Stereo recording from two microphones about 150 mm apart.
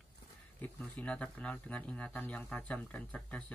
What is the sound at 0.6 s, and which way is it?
Speech, 10° left (ahead or behind).